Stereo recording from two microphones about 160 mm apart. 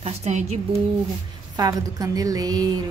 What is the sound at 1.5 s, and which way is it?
Speech, 25° right (ahead or behind).